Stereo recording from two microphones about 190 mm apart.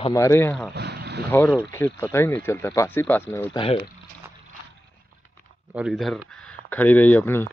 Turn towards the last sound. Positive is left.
turn(degrees=10)  # may be behind; listen again after turning